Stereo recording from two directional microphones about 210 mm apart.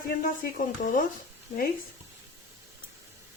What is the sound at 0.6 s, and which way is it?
Speech, 40° left (ahead or behind).